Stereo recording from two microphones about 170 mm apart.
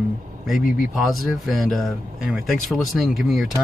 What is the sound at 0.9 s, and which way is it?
Speech, centre (ahead or behind).